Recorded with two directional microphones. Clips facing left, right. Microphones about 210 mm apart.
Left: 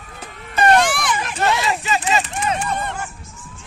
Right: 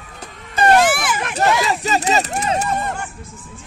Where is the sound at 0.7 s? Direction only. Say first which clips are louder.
Right 2 dB; 5° right (ahead or behind).